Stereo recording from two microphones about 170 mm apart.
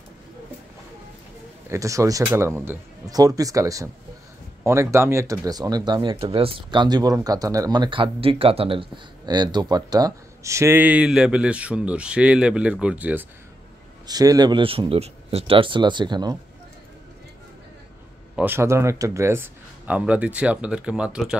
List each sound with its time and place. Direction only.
1.7 s speech: 20° right (ahead or behind)
14.0 s speech: 20° right (ahead or behind)
18.3 s speech: 10° right (ahead or behind)